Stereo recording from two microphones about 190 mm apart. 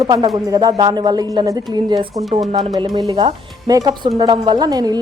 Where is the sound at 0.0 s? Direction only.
20° right (ahead or behind).